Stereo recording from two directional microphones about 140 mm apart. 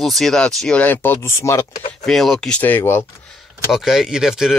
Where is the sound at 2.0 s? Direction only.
Centre (ahead or behind).